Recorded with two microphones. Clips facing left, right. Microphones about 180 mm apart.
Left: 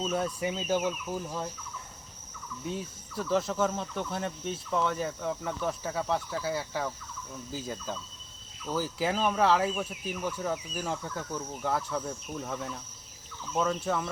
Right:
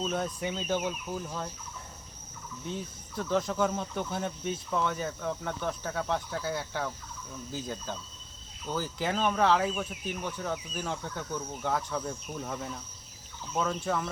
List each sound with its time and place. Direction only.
0.0 s speech: 5° left (ahead or behind)
2.6 s speech: 5° left (ahead or behind)